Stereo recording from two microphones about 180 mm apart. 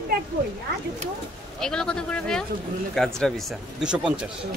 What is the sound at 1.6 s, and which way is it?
Speech, 5° left (ahead or behind).